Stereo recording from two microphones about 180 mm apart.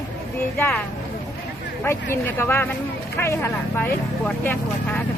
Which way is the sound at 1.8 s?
15° left (ahead or behind).